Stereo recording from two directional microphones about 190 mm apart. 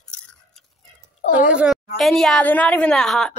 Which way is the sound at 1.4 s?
5° right (ahead or behind).